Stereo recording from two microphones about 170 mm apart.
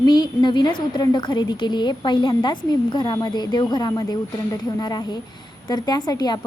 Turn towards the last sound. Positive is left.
turn(degrees=25)  # may be behind; listen again after turning